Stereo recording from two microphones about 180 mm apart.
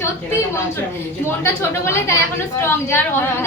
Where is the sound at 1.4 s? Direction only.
15° left (ahead or behind).